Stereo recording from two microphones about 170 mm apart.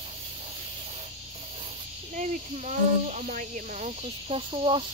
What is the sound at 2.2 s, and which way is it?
Speech, 45° right (ahead or behind).